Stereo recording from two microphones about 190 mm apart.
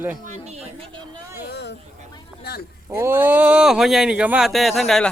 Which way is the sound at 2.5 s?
55° left (ahead or behind).